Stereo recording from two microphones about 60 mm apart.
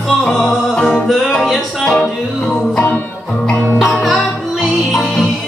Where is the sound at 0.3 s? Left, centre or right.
Centre.